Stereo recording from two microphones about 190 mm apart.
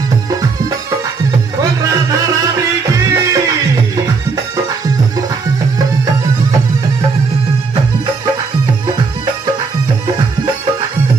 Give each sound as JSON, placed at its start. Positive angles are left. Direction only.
{"t": 1.6, "sound": "music", "side_deg": -20}